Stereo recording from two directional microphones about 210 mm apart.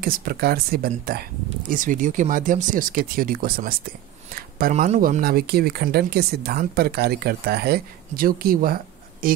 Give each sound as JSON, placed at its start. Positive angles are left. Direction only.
{"t": 0.0, "sound": "speech", "side_deg": -45}